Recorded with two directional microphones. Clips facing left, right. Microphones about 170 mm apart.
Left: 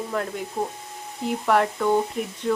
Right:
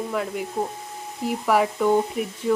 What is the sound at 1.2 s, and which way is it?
Sizzle, 5° right (ahead or behind).